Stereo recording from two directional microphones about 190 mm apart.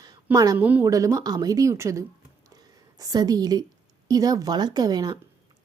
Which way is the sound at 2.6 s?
20° right (ahead or behind).